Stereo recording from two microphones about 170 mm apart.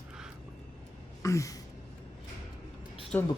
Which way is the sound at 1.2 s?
20° left (ahead or behind).